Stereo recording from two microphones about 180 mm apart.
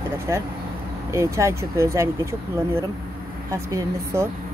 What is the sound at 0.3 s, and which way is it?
Speech, 20° right (ahead or behind).